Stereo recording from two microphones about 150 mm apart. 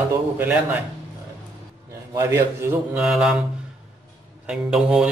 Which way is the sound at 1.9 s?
20° right (ahead or behind).